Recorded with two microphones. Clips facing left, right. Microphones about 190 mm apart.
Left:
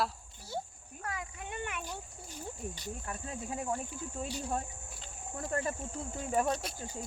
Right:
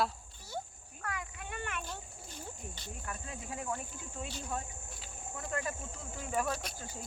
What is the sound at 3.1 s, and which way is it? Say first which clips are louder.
Cricket: left 2 dB; 30° left (ahead or behind).